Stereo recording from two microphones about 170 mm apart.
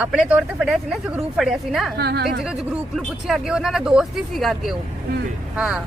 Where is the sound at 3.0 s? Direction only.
Centre (ahead or behind).